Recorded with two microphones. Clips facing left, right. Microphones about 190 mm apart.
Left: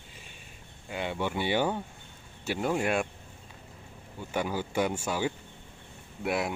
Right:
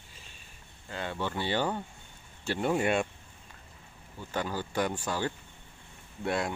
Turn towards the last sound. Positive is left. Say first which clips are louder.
# left 1 dB
turn(degrees=5)  # may be behind; listen again after turning